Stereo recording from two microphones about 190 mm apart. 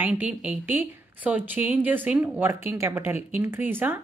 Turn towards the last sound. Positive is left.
turn(degrees=-10)  # may be behind; listen again after turning